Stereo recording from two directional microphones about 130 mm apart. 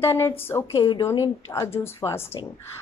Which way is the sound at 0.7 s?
30° left (ahead or behind).